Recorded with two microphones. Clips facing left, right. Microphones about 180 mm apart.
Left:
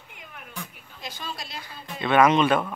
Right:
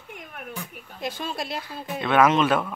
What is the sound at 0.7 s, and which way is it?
Speech, 55° right (ahead or behind).